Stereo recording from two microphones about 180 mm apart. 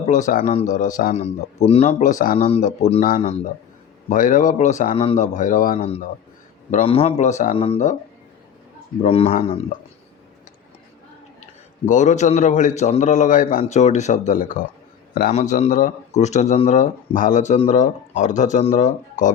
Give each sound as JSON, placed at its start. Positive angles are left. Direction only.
{"t": 0.1, "sound": "speech", "side_deg": 45}
{"t": 2.4, "sound": "a man's voice", "side_deg": 40}
{"t": 4.1, "sound": "speech", "side_deg": 45}
{"t": 6.7, "sound": "a man's voice", "side_deg": 35}
{"t": 9.0, "sound": "a man's voice", "side_deg": 35}
{"t": 11.9, "sound": "a man's voice", "side_deg": 45}